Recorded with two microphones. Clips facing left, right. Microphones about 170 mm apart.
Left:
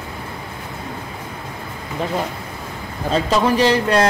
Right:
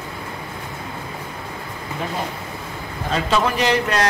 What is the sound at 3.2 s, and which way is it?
Speech, 35° left (ahead or behind).